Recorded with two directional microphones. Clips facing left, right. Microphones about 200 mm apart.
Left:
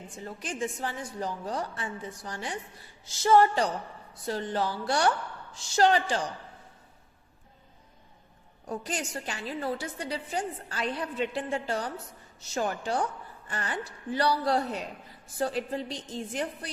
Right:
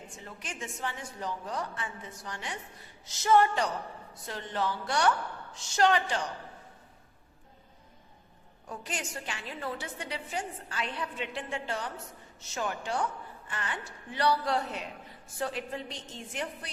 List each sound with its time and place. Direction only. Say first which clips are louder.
0.3 s a woman's voice: left 8 dB; 35° left (ahead or behind)
8.6 s a woman's voice: left 5 dB; 40° left (ahead or behind)